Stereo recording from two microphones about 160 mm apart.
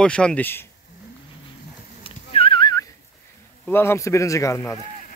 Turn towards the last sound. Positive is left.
turn(degrees=20)  # may be behind; listen again after turning